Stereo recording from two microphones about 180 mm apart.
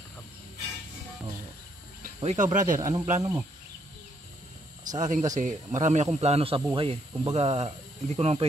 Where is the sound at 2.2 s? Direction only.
40° right (ahead or behind).